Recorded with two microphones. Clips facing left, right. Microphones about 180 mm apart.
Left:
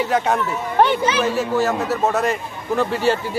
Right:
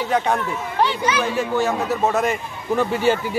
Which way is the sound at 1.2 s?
5° left (ahead or behind).